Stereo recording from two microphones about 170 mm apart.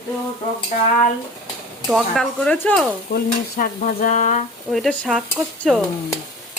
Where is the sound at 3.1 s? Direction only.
85° left.